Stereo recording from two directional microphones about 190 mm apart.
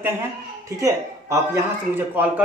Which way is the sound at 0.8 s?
15° right (ahead or behind).